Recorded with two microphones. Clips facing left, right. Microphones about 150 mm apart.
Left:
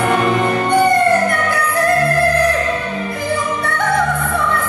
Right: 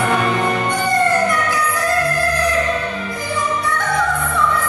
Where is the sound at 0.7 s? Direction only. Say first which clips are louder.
Left 8 dB; 55° left (ahead or behind).